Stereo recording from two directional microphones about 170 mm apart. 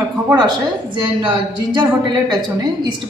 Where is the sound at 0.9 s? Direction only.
30° right (ahead or behind).